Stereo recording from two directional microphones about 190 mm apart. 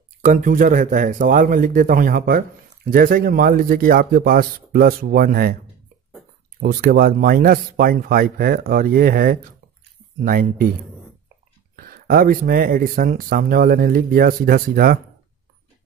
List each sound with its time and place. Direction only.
0.2 s speech: 45° right (ahead or behind)
6.6 s speech: 50° right (ahead or behind)
11.7 s speech: 50° right (ahead or behind)